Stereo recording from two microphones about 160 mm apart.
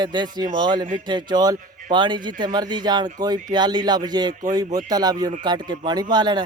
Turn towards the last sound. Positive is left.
turn(degrees=-25)  # may be behind; listen again after turning